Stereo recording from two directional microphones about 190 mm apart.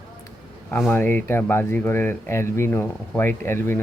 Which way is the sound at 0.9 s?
10° left (ahead or behind).